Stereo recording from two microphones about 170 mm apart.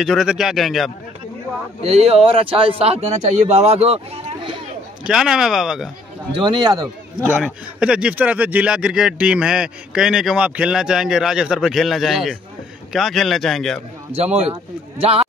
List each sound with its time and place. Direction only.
0.0 s speech: centre (ahead or behind)
1.8 s a man's voice: 35° right (ahead or behind)
5.0 s speech: 5° right (ahead or behind)
6.3 s a man's voice: 25° right (ahead or behind)
7.2 s speech: 5° right (ahead or behind)
14.1 s a man's voice: 40° right (ahead or behind)